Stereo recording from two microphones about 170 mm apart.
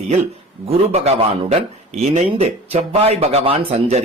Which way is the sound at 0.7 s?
40° right (ahead or behind).